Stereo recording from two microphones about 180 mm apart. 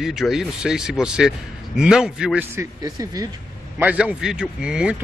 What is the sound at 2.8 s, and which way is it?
Speech, 20° right (ahead or behind).